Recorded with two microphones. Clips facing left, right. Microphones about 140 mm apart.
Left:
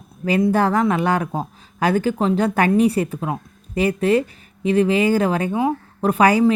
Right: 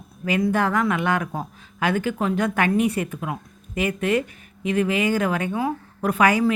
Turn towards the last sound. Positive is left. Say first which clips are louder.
# left 4 dB
turn(degrees=30)  # may be behind; listen again after turning